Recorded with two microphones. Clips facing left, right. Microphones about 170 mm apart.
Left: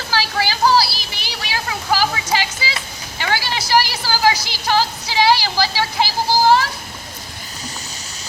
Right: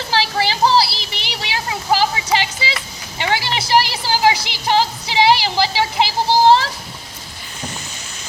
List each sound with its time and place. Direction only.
0.1 s a sound: 25° right (ahead or behind)
3.2 s vehicle: 25° right (ahead or behind)
3.7 s music: 25° right (ahead or behind)